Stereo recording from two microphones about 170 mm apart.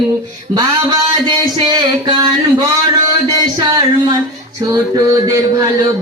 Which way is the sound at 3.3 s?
25° right (ahead or behind).